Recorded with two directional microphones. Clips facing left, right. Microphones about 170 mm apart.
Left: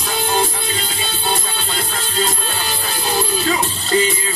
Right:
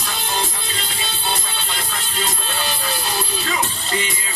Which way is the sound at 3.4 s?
35° left (ahead or behind).